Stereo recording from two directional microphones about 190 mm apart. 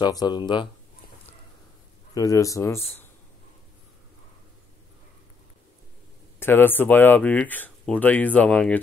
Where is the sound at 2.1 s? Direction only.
15° left (ahead or behind).